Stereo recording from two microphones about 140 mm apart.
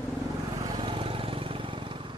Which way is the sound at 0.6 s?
35° right (ahead or behind).